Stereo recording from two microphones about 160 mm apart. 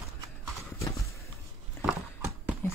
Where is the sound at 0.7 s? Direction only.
20° left (ahead or behind).